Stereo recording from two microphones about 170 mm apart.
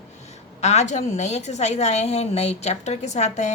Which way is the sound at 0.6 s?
40° left (ahead or behind).